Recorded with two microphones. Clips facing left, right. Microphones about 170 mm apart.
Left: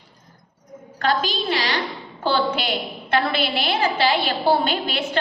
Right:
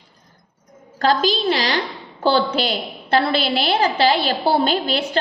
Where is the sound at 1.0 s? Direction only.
40° right (ahead or behind).